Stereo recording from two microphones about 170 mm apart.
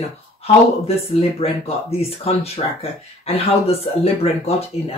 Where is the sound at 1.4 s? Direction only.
35° left (ahead or behind).